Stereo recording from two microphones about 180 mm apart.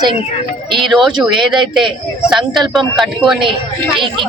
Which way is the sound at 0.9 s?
Centre (ahead or behind).